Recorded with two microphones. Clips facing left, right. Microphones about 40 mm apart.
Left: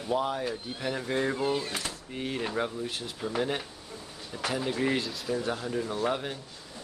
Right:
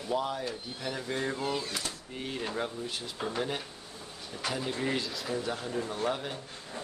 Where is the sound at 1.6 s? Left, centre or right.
Left.